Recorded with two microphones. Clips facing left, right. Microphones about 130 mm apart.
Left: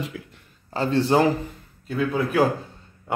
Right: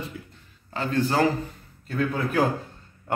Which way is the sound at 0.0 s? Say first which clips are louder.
Left 4 dB; 90° left.